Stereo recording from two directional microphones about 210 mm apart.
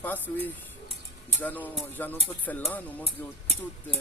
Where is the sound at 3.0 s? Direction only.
30° right (ahead or behind).